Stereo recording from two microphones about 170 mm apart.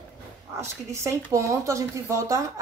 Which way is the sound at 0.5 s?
15° right (ahead or behind).